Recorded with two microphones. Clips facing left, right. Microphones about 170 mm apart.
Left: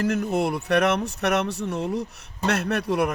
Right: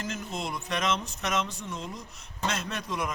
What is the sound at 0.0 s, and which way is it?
A man's voice, 65° left (ahead or behind).